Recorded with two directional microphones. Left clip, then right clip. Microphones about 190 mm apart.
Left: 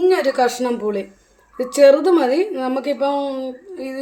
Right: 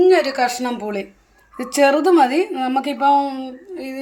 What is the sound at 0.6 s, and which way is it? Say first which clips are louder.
A woman's voice: left 3 dB; 45° right (ahead or behind).